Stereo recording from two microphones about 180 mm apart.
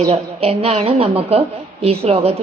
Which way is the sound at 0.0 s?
35° right (ahead or behind).